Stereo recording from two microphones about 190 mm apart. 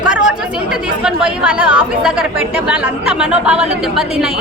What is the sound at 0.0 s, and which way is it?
A woman's voice, 5° right (ahead or behind).